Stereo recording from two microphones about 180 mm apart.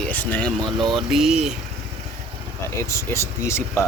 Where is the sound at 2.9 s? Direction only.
15° left (ahead or behind).